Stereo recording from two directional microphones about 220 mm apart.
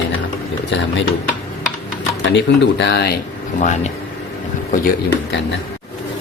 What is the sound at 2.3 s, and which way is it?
Speech, 50° left (ahead or behind).